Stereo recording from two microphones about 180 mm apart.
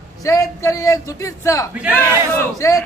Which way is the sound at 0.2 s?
20° left (ahead or behind).